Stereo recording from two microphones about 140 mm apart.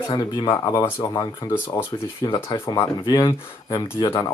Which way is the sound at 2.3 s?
35° left (ahead or behind).